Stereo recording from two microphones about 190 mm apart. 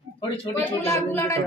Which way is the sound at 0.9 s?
15° left (ahead or behind).